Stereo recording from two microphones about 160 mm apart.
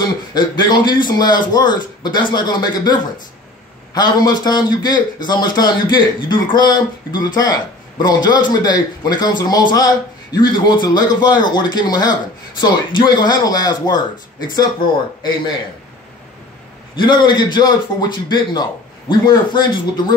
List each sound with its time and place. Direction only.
0.0 s a man's voice: 25° left (ahead or behind)
16.9 s a man's voice: 30° left (ahead or behind)